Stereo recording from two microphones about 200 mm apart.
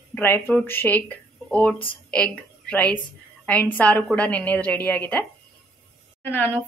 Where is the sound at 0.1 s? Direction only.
10° left (ahead or behind).